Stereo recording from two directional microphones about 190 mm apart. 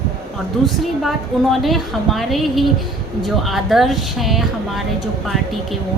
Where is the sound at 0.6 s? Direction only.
Centre (ahead or behind).